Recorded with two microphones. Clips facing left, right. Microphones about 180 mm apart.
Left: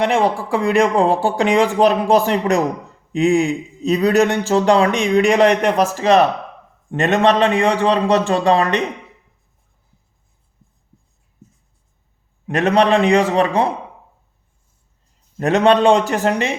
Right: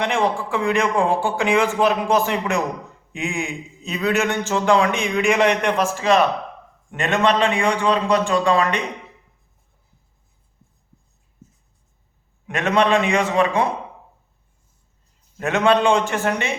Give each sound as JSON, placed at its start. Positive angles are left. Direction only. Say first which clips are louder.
{"t": 0.0, "sound": "speech", "louder": "left 4 dB", "side_deg": 35}
{"t": 7.0, "sound": "speech", "louder": "left 4 dB", "side_deg": 35}
{"t": 12.5, "sound": "speech", "louder": "left 4 dB", "side_deg": 35}
{"t": 15.4, "sound": "speech", "louder": "left 4 dB", "side_deg": 35}